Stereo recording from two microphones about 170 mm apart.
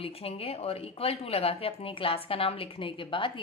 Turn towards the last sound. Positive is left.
turn(degrees=30)  # may be behind; listen again after turning